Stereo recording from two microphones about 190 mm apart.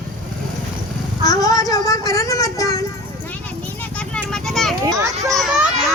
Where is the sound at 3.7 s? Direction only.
5° left (ahead or behind).